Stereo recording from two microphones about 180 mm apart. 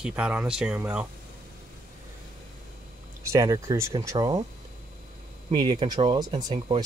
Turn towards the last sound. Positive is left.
turn(degrees=-30)  # may be behind; listen again after turning